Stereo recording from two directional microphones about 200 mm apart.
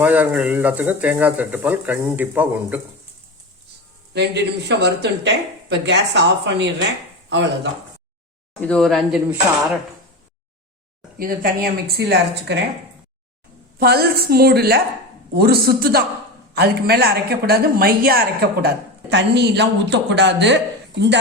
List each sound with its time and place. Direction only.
0.0 s speech: 5° right (ahead or behind)
4.1 s speech: 60° right (ahead or behind)
8.6 s speech: 5° left (ahead or behind)
11.2 s a woman's voice: 45° right (ahead or behind)
13.7 s a woman's voice: 50° right (ahead or behind)